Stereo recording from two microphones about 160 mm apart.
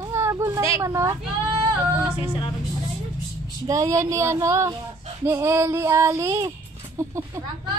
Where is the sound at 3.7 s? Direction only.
20° right (ahead or behind).